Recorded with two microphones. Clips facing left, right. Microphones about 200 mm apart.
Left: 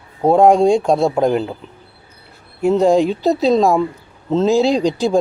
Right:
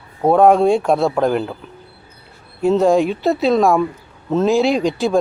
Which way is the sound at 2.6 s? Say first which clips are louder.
Left 1 dB; 15° left (ahead or behind).